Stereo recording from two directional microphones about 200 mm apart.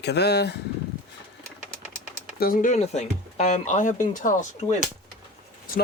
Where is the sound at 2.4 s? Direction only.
45° left (ahead or behind).